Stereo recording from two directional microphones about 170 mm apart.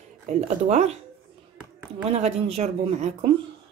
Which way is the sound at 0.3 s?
40° right (ahead or behind).